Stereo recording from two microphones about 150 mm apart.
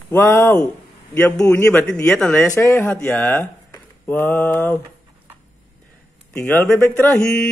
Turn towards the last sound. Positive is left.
turn(degrees=5)  # may be behind; listen again after turning